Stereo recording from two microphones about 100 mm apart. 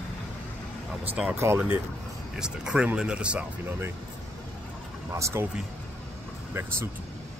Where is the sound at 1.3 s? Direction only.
25° right (ahead or behind).